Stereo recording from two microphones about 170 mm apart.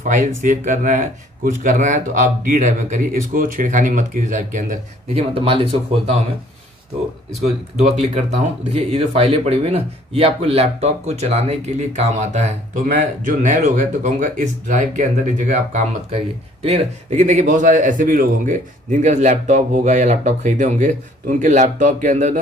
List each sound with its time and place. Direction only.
0.0 s speech: 50° right (ahead or behind)
5.1 s speech: 35° right (ahead or behind)
8.0 s speech: 40° right (ahead or behind)